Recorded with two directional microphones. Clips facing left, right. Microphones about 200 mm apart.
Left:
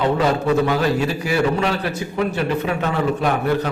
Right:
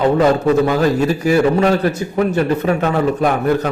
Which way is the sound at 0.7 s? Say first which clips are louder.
Right 4 dB; 45° right (ahead or behind).